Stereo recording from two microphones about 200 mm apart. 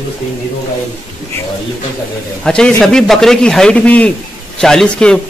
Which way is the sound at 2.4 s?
5° left (ahead or behind).